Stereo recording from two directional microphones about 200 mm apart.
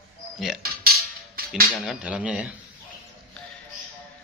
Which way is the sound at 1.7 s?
5° right (ahead or behind).